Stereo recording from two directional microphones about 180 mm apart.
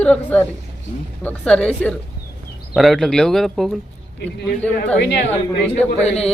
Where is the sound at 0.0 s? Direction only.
10° left (ahead or behind).